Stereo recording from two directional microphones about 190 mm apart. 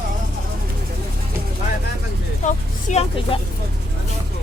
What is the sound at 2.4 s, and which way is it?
Speech, 40° left (ahead or behind).